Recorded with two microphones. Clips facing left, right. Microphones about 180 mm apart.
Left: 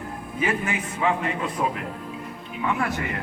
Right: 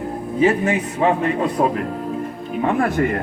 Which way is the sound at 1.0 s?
40° right (ahead or behind).